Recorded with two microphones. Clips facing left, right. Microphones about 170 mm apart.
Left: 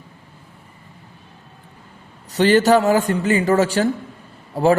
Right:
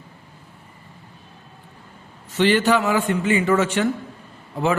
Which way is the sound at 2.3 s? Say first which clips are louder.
Left 4 dB; 40° left (ahead or behind).